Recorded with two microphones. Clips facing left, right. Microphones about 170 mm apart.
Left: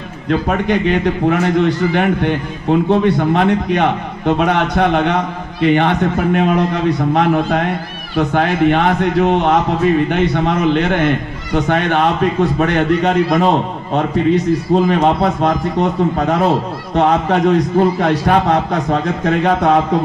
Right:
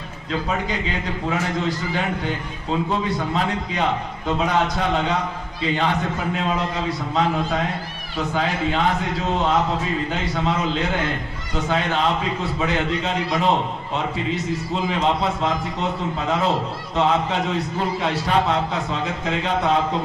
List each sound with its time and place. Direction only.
0.3 s a man's voice: 70° left (ahead or behind)